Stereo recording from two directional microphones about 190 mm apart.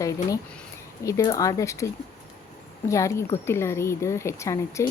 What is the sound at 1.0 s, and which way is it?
Speech, 20° left (ahead or behind).